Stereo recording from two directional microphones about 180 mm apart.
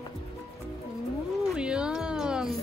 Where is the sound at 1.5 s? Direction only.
5° right (ahead or behind).